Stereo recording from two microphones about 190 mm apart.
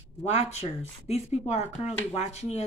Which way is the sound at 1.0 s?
35° left (ahead or behind).